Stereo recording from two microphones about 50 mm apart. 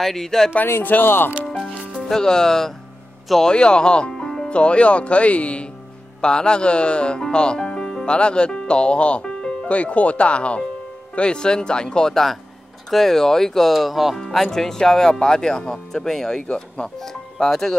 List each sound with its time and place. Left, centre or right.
0.0 s speech: centre
0.8 s speech: left
1.4 s music: left
2.0 s speech: centre
9.7 s speech: left; by 17.7 s centre